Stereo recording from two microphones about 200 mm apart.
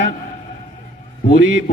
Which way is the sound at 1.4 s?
70° right (ahead or behind).